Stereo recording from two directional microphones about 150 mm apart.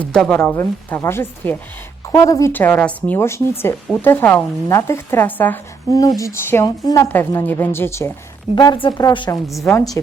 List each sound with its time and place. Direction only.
0.0 s speech: 5° left (ahead or behind)
5.9 s a woman's voice: 25° left (ahead or behind)
7.1 s speech: 15° left (ahead or behind)
8.5 s a woman's voice: 30° left (ahead or behind)